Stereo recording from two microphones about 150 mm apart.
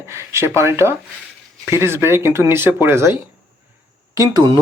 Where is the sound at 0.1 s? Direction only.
15° right (ahead or behind).